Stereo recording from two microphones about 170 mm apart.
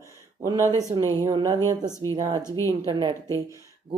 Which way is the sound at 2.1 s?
20° right (ahead or behind).